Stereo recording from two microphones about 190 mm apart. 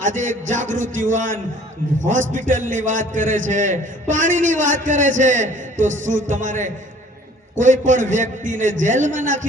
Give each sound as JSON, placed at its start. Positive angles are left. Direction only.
{"t": 0.0, "sound": "a man's voice", "side_deg": -40}